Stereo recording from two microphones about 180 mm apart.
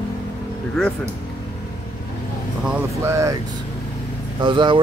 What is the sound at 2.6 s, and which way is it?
Speech, 10° right (ahead or behind).